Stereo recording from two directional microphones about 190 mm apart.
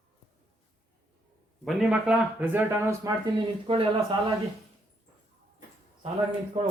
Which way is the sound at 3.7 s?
30° right (ahead or behind).